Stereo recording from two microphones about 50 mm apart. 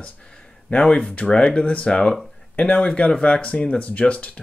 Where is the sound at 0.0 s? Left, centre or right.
Centre.